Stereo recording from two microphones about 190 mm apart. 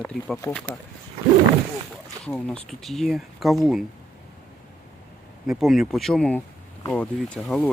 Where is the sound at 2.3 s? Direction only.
5° left (ahead or behind).